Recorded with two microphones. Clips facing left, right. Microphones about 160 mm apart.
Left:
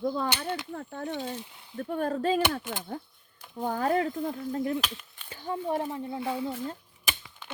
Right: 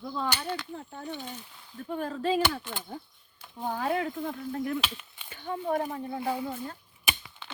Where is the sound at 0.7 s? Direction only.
60° left (ahead or behind).